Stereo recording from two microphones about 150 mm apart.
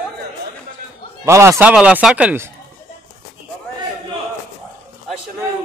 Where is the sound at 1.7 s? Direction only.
5° right (ahead or behind).